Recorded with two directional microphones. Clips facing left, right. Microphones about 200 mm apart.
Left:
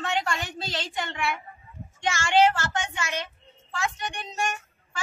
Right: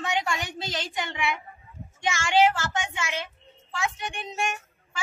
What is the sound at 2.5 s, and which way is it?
A woman's voice, centre (ahead or behind).